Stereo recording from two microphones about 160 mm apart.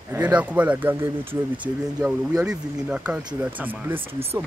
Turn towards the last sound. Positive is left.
turn(degrees=-15)  # may be behind; listen again after turning